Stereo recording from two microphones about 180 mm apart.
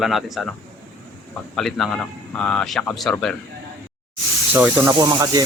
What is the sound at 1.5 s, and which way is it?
A man's voice, centre (ahead or behind).